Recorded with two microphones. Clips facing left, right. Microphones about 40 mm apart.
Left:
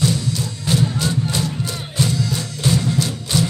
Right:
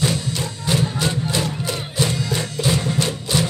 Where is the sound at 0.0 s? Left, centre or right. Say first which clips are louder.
Left 1 dB; right.